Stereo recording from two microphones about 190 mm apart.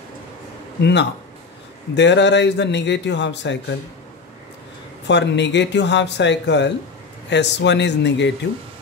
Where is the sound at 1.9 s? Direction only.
65° left (ahead or behind).